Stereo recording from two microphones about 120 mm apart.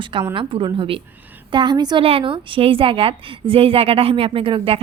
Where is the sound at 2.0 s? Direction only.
50° right (ahead or behind).